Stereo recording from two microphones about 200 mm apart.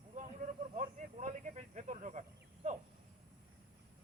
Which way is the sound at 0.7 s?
40° right (ahead or behind).